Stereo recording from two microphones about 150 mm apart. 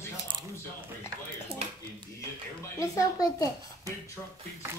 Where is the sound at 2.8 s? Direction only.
25° left (ahead or behind).